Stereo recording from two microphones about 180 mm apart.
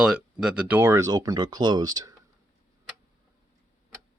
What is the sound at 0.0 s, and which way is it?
Speech, 5° right (ahead or behind).